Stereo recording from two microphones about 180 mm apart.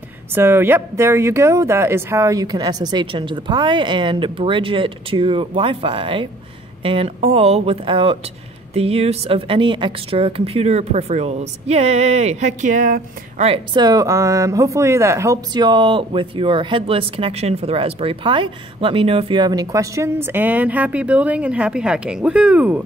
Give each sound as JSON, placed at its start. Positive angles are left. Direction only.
{"t": 0.3, "sound": "a woman's voice", "side_deg": -15}
{"t": 13.5, "sound": "speech", "side_deg": -25}